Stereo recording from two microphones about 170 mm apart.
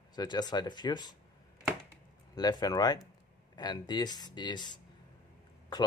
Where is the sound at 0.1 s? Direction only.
25° left (ahead or behind).